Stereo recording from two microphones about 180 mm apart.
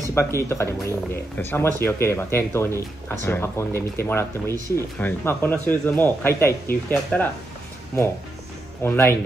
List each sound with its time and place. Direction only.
0.1 s a man's voice: 15° left (ahead or behind)
8.8 s a man's voice: 15° left (ahead or behind)